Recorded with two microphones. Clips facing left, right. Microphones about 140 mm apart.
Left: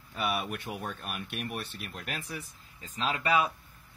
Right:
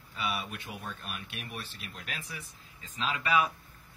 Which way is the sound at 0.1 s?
60° left (ahead or behind).